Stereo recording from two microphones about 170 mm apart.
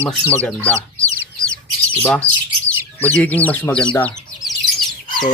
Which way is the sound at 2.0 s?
10° left (ahead or behind).